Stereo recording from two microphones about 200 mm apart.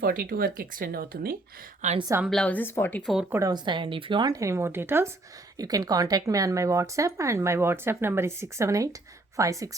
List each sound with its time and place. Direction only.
0.0 s speech: 45° right (ahead or behind)
2.0 s speech: 15° right (ahead or behind)
2.2 s speech: 5° left (ahead or behind)
3.3 s a woman's voice: 20° right (ahead or behind)